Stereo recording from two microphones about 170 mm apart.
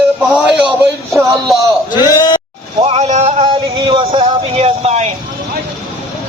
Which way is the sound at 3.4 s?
30° right (ahead or behind).